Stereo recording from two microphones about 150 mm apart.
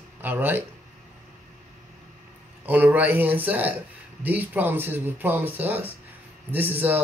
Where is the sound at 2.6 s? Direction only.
10° right (ahead or behind).